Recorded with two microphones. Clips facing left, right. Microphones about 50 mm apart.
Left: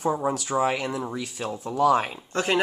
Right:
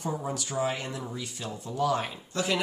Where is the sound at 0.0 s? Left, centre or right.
Left.